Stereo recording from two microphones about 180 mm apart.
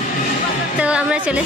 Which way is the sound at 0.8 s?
5° right (ahead or behind).